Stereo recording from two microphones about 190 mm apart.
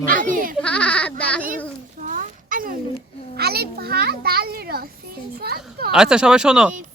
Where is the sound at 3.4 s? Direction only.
55° right (ahead or behind).